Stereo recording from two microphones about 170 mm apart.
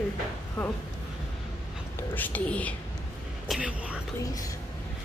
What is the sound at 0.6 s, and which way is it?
Speech, 10° left (ahead or behind).